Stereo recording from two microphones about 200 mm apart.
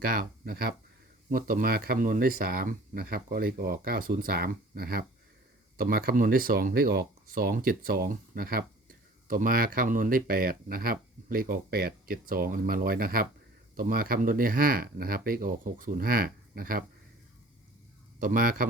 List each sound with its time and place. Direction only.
0.0 s speech: 45° right (ahead or behind)
18.2 s speech: 45° right (ahead or behind)